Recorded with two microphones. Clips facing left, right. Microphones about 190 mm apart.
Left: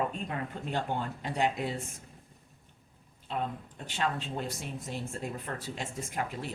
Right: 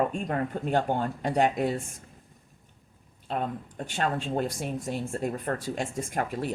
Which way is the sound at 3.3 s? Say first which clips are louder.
Right 4 dB; 45° right (ahead or behind).